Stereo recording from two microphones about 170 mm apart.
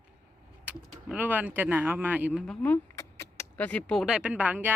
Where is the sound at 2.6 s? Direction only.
15° left (ahead or behind).